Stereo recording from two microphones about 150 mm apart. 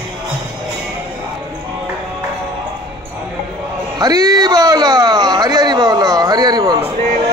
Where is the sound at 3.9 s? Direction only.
25° right (ahead or behind).